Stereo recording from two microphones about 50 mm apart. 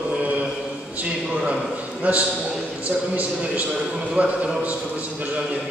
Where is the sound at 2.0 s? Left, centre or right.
Right.